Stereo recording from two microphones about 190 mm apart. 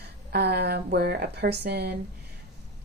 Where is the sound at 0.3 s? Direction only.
60° right (ahead or behind).